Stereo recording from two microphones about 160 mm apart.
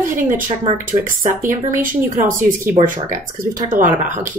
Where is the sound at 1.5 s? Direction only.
55° right (ahead or behind).